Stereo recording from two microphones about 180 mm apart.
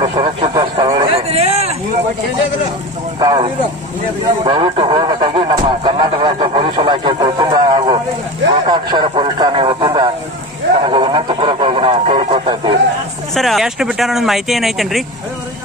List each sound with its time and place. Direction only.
0.0 s speech: 25° right (ahead or behind)
0.8 s a sound: 25° right (ahead or behind)
3.2 s speech: 25° right (ahead or behind)
4.5 s speech: 25° right (ahead or behind)
8.5 s radio: 25° right (ahead or behind)
10.8 s a sound: 30° right (ahead or behind)
13.3 s speech: centre (ahead or behind)